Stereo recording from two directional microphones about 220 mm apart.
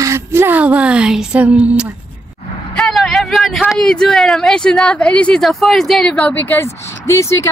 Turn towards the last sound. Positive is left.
turn(degrees=15)  # may be behind; listen again after turning